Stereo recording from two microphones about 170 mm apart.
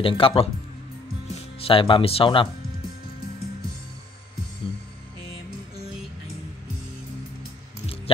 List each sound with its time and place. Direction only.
0.0 s speech: 30° left (ahead or behind)